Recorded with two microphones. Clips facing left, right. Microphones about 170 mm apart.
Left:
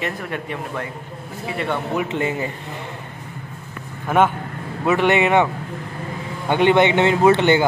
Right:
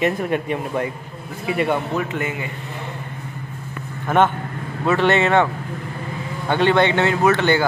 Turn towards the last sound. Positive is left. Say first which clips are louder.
# left 2 dB
turn(degrees=20)  # may be behind; listen again after turning